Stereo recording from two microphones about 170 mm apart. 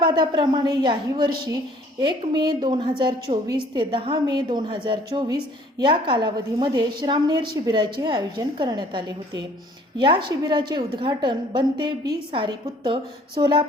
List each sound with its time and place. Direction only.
0.0 s a woman's voice: 25° right (ahead or behind)